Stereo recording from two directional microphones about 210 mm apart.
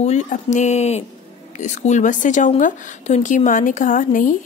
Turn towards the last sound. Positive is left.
turn(degrees=35)  # may be behind; listen again after turning